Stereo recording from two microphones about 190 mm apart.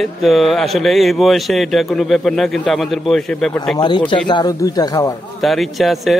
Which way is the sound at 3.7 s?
25° left (ahead or behind).